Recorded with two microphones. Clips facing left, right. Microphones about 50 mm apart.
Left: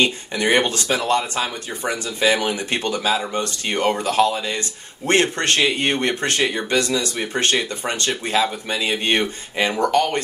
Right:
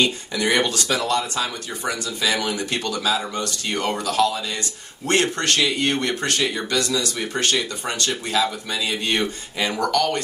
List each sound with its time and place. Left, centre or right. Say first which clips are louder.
0.0 s speech: left 2 dB; left